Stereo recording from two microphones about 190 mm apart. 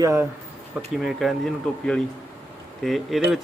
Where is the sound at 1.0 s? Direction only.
Centre (ahead or behind).